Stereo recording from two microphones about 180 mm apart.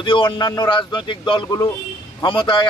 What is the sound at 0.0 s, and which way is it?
A man's voice, 30° left (ahead or behind).